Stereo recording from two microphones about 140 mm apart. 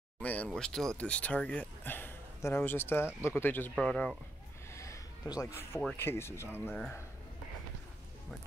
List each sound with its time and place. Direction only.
0.2 s speech: 10° left (ahead or behind)
4.7 s a sound: 20° left (ahead or behind)
5.9 s speech: 15° left (ahead or behind)